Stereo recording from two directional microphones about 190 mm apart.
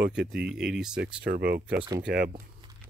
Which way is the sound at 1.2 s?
50° right (ahead or behind).